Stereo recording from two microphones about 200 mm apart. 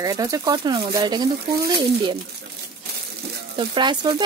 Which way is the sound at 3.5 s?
25° right (ahead or behind).